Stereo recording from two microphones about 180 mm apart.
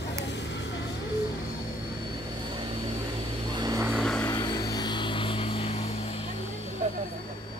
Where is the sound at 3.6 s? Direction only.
20° right (ahead or behind).